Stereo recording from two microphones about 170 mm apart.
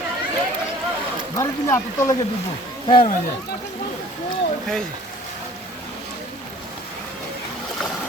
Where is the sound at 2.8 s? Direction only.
30° left (ahead or behind).